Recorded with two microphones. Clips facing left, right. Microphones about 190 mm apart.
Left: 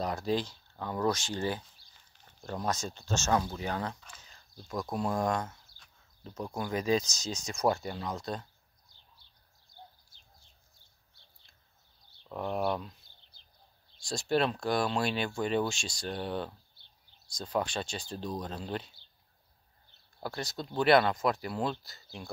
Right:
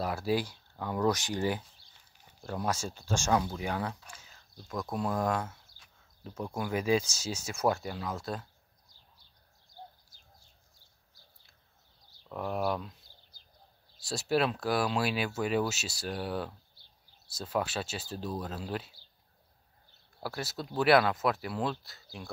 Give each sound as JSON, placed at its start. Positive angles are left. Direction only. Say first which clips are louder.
{"t": 0.0, "sound": "speech", "louder": "right 1 dB", "side_deg": -5}
{"t": 9.7, "sound": "a sound", "louder": "right 4 dB", "side_deg": -35}
{"t": 12.3, "sound": "speech", "louder": "even", "side_deg": 0}
{"t": 13.9, "sound": "speech", "louder": "even", "side_deg": -5}
{"t": 20.2, "sound": "speech", "louder": "even", "side_deg": -5}